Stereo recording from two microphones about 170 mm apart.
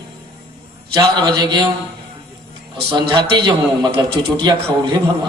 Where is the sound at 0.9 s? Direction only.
25° right (ahead or behind).